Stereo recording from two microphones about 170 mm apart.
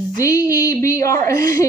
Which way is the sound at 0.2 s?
20° left (ahead or behind).